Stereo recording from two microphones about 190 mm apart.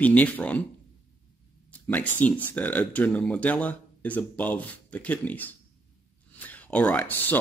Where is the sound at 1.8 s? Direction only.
10° left (ahead or behind).